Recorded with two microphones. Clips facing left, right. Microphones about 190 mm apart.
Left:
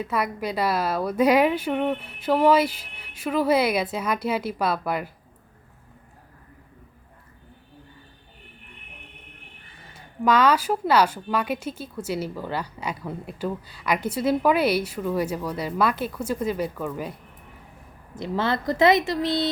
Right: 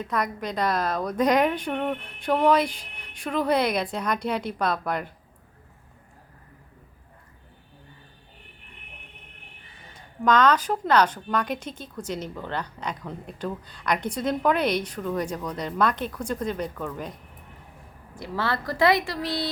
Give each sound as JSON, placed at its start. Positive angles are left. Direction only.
{"t": 0.0, "sound": "a woman's voice", "side_deg": 5}
{"t": 9.9, "sound": "a woman's voice", "side_deg": 10}
{"t": 18.1, "sound": "a woman's voice", "side_deg": 20}